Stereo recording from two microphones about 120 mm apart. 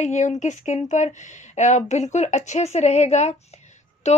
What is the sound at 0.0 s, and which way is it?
Speech, 80° left.